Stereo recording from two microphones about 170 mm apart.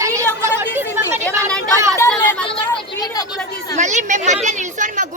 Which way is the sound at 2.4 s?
30° left (ahead or behind).